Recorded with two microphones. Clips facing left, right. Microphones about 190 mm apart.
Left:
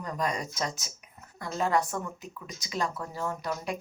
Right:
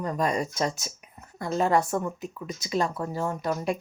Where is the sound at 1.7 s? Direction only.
35° right (ahead or behind).